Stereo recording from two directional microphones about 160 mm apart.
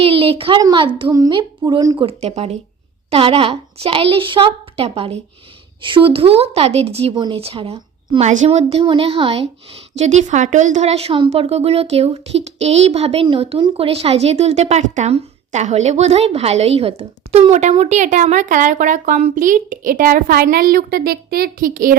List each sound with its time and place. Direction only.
0.0 s a sound: 35° right (ahead or behind)
0.6 s a woman's voice: 30° right (ahead or behind)
2.0 s a woman's voice: 40° right (ahead or behind)
10.0 s a woman's voice: 45° right (ahead or behind); by 21.9 s 60° right (ahead or behind)